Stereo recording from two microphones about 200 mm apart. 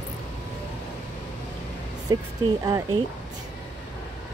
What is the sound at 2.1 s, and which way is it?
Speech, 20° right (ahead or behind).